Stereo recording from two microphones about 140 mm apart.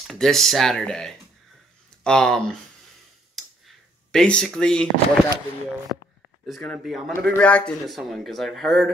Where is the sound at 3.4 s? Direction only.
Centre (ahead or behind).